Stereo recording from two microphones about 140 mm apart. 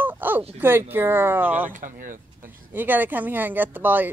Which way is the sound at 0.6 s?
15° right (ahead or behind).